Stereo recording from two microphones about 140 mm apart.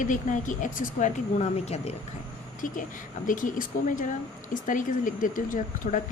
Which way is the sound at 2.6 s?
70° left (ahead or behind).